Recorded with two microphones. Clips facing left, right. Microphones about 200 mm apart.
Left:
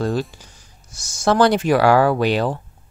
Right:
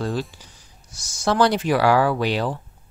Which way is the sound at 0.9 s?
45° left (ahead or behind).